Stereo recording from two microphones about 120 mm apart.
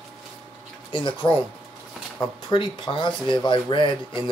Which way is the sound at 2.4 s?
45° left (ahead or behind).